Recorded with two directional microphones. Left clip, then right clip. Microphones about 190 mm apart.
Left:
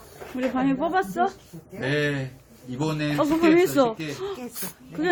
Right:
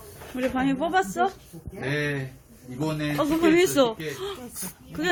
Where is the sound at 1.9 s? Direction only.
45° left (ahead or behind).